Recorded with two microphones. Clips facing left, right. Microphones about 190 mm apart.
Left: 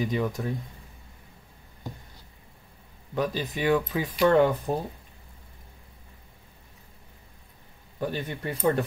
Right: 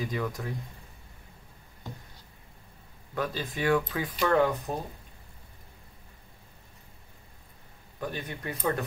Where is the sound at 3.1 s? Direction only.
20° left (ahead or behind).